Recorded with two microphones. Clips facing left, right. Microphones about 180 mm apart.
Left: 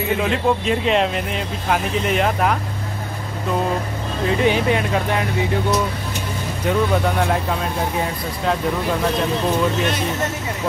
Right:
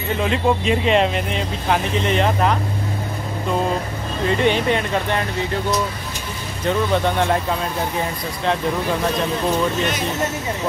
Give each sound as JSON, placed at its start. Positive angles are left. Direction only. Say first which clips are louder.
{"t": 0.2, "sound": "speech", "louder": "even", "side_deg": 0}
{"t": 4.3, "sound": "speech", "louder": "even", "side_deg": 5}
{"t": 6.6, "sound": "speech", "louder": "even", "side_deg": 5}